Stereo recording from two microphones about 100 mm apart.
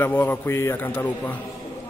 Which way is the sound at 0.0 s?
20° left (ahead or behind).